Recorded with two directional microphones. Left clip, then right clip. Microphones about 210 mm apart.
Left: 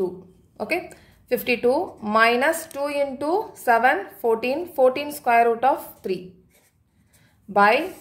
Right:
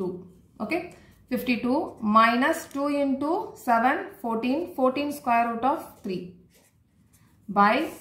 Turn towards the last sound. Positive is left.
turn(degrees=55)  # may be behind; listen again after turning